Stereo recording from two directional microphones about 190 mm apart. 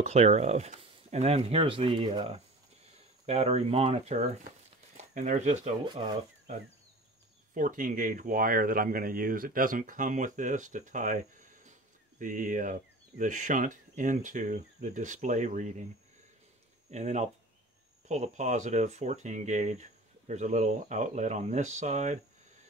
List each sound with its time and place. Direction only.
0.0 s speech: 35° right (ahead or behind)
7.5 s speech: 45° right (ahead or behind)
16.9 s speech: 35° right (ahead or behind)